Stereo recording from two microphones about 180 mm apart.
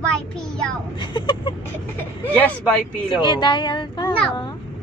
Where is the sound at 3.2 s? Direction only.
25° left (ahead or behind).